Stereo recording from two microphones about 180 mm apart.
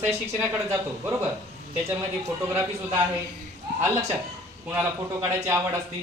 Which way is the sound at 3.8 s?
15° right (ahead or behind).